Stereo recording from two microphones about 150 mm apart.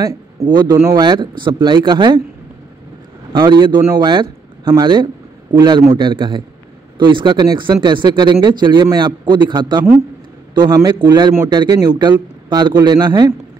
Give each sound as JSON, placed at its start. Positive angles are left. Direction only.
{"t": 0.0, "sound": "a man's voice", "side_deg": -25}
{"t": 1.0, "sound": "speech", "side_deg": -30}
{"t": 3.3, "sound": "a man's voice", "side_deg": -30}